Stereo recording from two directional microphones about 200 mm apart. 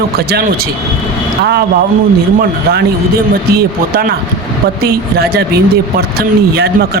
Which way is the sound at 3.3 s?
50° right (ahead or behind).